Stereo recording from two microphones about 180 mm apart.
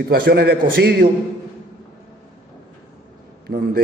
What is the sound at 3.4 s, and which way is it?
Speech, 60° right (ahead or behind).